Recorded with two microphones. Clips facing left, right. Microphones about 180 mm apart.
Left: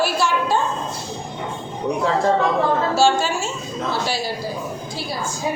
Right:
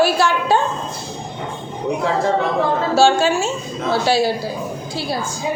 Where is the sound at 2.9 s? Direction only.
65° right (ahead or behind).